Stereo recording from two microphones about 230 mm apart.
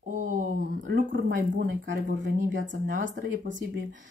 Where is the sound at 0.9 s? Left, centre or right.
Right.